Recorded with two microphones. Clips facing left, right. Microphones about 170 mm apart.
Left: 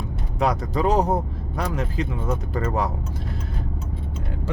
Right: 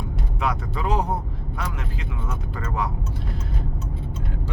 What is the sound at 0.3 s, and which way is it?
Speech, 40° left (ahead or behind).